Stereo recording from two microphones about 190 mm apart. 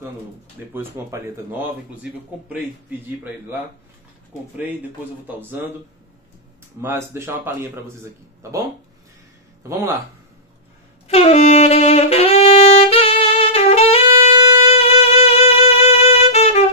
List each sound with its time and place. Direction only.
0.7 s a man's voice: 10° right (ahead or behind)
5.4 s a man's voice: 10° right (ahead or behind)
6.8 s a man's voice: 15° right (ahead or behind)
11.1 s saxophone: 35° left (ahead or behind)
14.6 s music: 30° left (ahead or behind)